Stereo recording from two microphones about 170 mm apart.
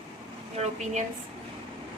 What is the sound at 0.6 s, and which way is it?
Speech, 40° right (ahead or behind).